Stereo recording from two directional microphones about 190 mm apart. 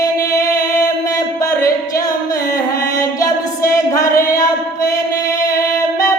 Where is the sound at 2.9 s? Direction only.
15° left (ahead or behind).